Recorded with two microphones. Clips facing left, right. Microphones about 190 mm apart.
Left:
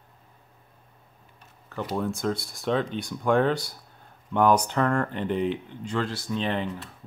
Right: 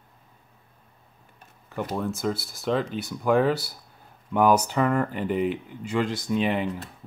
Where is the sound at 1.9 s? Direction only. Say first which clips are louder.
Left 1 dB; centre (ahead or behind).